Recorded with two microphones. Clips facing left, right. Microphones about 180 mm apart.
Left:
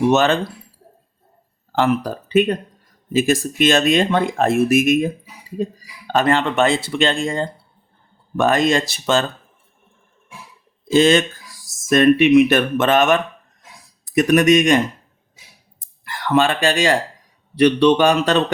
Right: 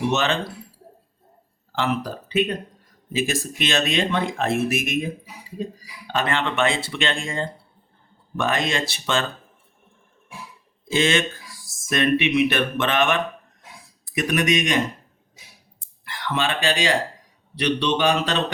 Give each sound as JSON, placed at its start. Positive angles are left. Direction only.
{"t": 0.1, "sound": "speech", "side_deg": 45}
{"t": 1.7, "sound": "speech", "side_deg": 45}
{"t": 10.9, "sound": "speech", "side_deg": 40}
{"t": 15.8, "sound": "a sound", "side_deg": 45}
{"t": 17.5, "sound": "speech", "side_deg": 50}